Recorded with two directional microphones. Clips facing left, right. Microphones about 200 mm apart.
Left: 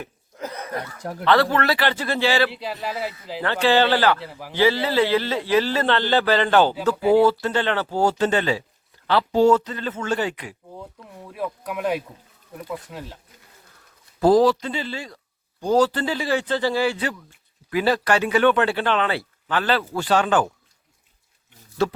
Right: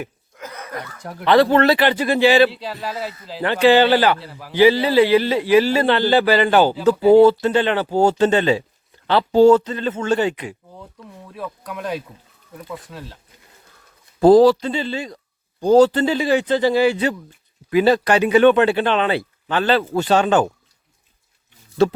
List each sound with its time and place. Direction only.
0.3 s chuckle: 30° left (ahead or behind)
1.2 s a man's voice: 15° right (ahead or behind)
2.5 s speech: 10° left (ahead or behind)
3.4 s a man's voice: 15° right (ahead or behind)
4.2 s speech: 15° left (ahead or behind)
4.5 s a man's voice: 15° right (ahead or behind)
6.8 s a man's voice: 25° right (ahead or behind)
11.3 s speech: 10° left (ahead or behind)
14.2 s a man's voice: 30° right (ahead or behind)
21.8 s a man's voice: 25° right (ahead or behind)